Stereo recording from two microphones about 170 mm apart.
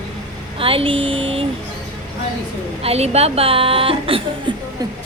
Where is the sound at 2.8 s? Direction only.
35° right (ahead or behind).